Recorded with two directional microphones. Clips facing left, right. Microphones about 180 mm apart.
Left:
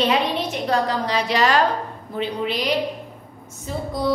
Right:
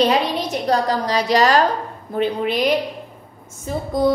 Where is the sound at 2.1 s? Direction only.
50° right (ahead or behind).